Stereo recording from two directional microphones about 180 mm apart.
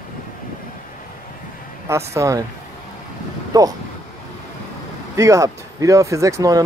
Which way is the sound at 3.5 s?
20° right (ahead or behind).